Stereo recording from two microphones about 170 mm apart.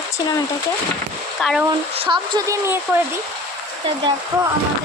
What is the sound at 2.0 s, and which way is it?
Speech, 30° right (ahead or behind).